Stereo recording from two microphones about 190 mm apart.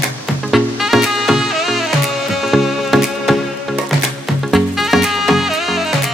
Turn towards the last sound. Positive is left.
turn(degrees=0)  # may be behind; listen again after turning